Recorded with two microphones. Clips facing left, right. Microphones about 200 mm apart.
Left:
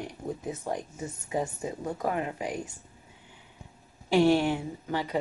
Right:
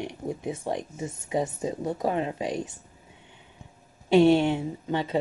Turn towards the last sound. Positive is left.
turn(degrees=-25)  # may be behind; listen again after turning